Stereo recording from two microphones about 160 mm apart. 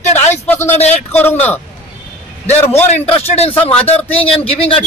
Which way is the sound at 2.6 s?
15° left (ahead or behind).